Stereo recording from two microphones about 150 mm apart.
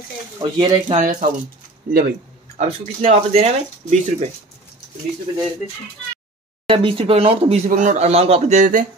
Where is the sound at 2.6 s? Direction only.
45° right (ahead or behind).